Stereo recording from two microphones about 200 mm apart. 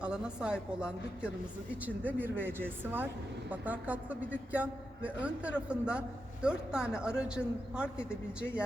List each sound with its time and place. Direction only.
0.0 s a man's voice: 5° right (ahead or behind)